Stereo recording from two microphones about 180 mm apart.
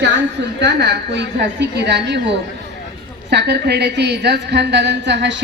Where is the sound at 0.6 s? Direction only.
70° right (ahead or behind).